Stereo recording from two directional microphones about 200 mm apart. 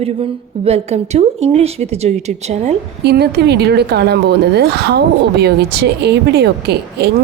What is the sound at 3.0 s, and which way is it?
Speech, 55° right (ahead or behind).